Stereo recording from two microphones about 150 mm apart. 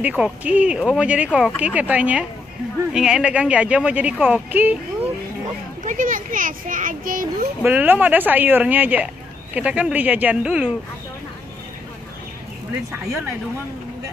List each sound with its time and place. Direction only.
0.0 s speech: 10° right (ahead or behind)
5.9 s a child's voice: 60° right (ahead or behind)
7.6 s speech: 15° right (ahead or behind)